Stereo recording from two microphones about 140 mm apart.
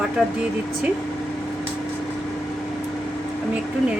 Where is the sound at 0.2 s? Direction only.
5° right (ahead or behind).